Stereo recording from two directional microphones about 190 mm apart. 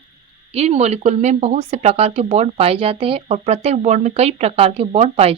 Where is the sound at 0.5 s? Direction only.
35° right (ahead or behind).